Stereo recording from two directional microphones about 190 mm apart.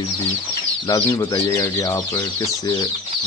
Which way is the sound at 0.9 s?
20° left (ahead or behind).